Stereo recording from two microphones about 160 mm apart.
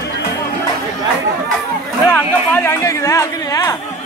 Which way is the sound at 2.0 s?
15° left (ahead or behind).